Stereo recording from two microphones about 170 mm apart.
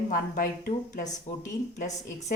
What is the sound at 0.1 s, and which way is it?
A woman's voice, 55° left (ahead or behind).